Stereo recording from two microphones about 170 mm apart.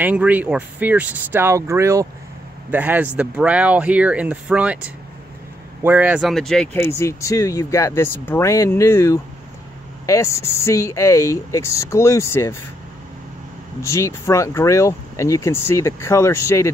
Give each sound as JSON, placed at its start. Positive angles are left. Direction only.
{"t": 0.0, "sound": "speech", "side_deg": -10}
{"t": 5.8, "sound": "speech", "side_deg": -10}
{"t": 6.8, "sound": "speech", "side_deg": 15}
{"t": 13.8, "sound": "speech", "side_deg": 15}